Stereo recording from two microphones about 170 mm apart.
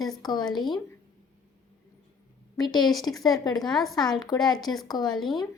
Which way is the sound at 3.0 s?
25° left (ahead or behind).